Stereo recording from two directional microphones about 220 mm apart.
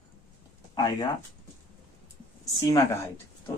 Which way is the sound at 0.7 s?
20° left (ahead or behind).